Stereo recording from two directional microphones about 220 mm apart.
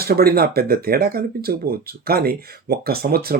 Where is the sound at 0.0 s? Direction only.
45° right (ahead or behind).